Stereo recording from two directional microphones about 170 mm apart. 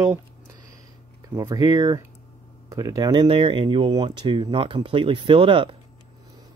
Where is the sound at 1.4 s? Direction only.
20° right (ahead or behind).